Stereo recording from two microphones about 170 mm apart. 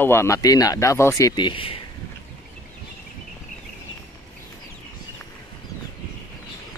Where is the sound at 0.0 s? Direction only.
15° left (ahead or behind); by 1.8 s 30° left (ahead or behind).